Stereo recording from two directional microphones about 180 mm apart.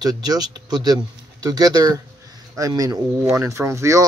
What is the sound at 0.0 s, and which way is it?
Speech, 20° right (ahead or behind).